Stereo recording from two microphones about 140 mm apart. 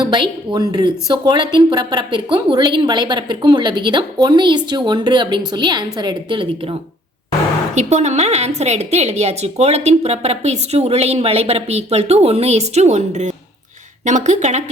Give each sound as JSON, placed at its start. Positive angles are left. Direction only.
{"t": 0.0, "sound": "a woman's voice", "side_deg": -35}
{"t": 7.8, "sound": "a woman's voice", "side_deg": -55}